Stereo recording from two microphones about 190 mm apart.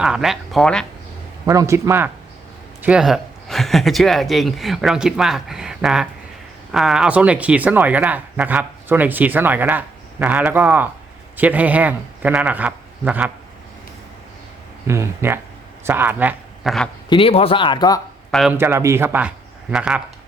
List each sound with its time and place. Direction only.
0.0 s speech: 5° right (ahead or behind)
1.5 s a man's voice: 15° right (ahead or behind)
14.8 s speech: 15° right (ahead or behind)
17.1 s speech: 30° left (ahead or behind)
18.3 s speech: centre (ahead or behind)
18.5 s speech: 15° right (ahead or behind)